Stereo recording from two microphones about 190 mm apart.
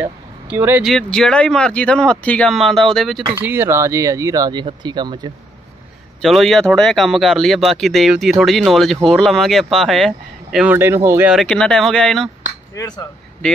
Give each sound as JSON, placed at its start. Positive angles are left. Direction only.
{"t": 0.0, "sound": "a sound", "side_deg": -10}
{"t": 0.9, "sound": "speech", "side_deg": 5}
{"t": 3.3, "sound": "speech", "side_deg": -10}
{"t": 6.2, "sound": "speech", "side_deg": 0}
{"t": 11.3, "sound": "speech", "side_deg": 5}
{"t": 12.7, "sound": "speech", "side_deg": 20}